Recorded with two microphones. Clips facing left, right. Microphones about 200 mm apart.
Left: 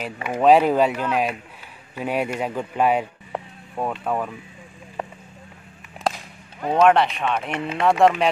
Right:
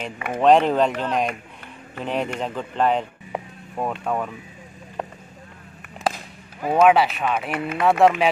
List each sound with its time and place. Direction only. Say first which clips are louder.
0.3 s speech: left 1 dB; 5° left (ahead or behind)
3.3 s a sound: right 1 dB; centre (ahead or behind)
6.0 s a sound: even; 5° right (ahead or behind)
6.6 s speech: even; 5° right (ahead or behind)
7.5 s speech: right 1 dB; 25° left (ahead or behind)
8.0 s speech: even; centre (ahead or behind)